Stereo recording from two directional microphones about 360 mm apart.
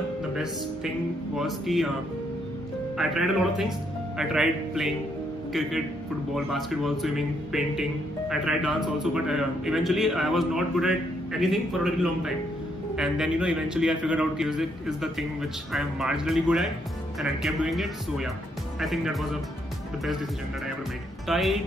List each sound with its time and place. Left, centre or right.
1.3 s a man's voice: centre
3.0 s a man's voice: centre
21.3 s a man's voice: centre